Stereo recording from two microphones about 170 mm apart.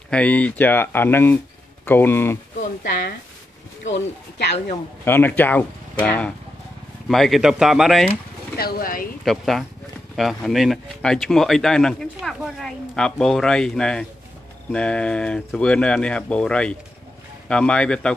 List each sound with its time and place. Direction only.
0.1 s speech: 10° left (ahead or behind)
2.8 s speech: 70° left (ahead or behind)
3.8 s speech: 90° left
5.0 s speech: 10° left (ahead or behind)
8.5 s speech: 60° left (ahead or behind)
9.2 s speech: centre (ahead or behind)